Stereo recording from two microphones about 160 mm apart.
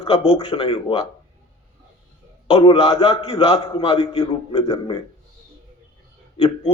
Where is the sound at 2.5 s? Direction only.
35° left (ahead or behind).